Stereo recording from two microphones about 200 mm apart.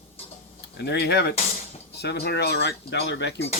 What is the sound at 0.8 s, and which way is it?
Speech, 55° left (ahead or behind).